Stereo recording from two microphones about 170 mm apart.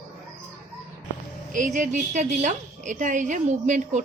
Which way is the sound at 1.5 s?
50° right (ahead or behind).